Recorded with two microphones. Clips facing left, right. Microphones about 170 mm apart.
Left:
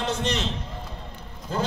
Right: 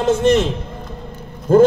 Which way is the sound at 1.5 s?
50° right (ahead or behind).